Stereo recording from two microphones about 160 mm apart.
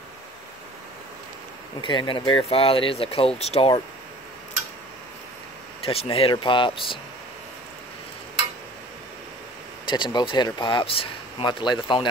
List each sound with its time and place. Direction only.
1.8 s speech: 30° left (ahead or behind)
5.9 s speech: 35° left (ahead or behind)
9.8 s speech: 30° left (ahead or behind)